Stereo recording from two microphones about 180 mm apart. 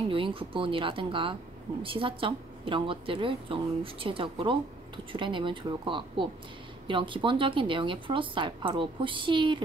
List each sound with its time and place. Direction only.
0.1 s speech: 30° right (ahead or behind)